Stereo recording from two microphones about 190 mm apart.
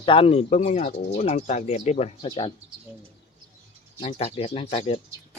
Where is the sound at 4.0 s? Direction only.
30° left (ahead or behind).